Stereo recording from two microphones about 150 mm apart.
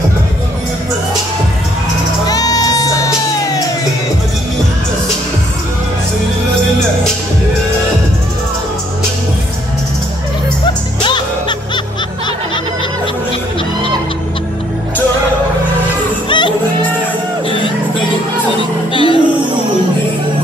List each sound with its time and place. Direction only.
2.2 s music: 25° left (ahead or behind)
11.1 s music: 30° left (ahead or behind)
16.3 s music: 35° left (ahead or behind)
18.9 s music: 35° left (ahead or behind)